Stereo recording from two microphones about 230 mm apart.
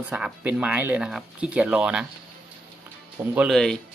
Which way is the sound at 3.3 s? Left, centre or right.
Centre.